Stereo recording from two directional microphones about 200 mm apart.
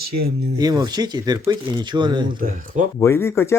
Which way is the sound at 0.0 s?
50° right (ahead or behind).